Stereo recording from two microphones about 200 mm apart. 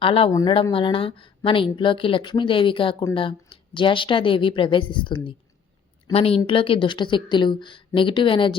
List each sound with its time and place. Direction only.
0.0 s a woman's voice: 25° left (ahead or behind)